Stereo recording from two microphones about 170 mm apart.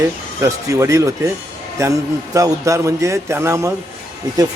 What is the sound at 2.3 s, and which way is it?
Speech, 20° right (ahead or behind).